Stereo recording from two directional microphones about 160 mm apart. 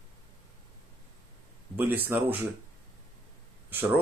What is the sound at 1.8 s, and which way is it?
Speech, 10° right (ahead or behind).